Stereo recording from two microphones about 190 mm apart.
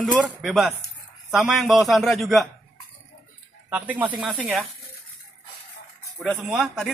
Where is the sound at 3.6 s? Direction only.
10° right (ahead or behind).